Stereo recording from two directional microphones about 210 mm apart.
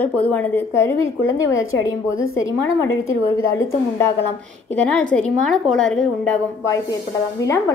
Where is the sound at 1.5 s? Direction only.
70° left (ahead or behind).